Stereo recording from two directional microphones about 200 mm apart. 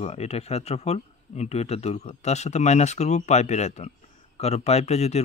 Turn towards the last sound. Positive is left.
turn(degrees=30)  # may be behind; listen again after turning